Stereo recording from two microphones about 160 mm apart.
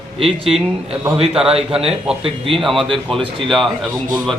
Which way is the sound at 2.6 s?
Centre (ahead or behind).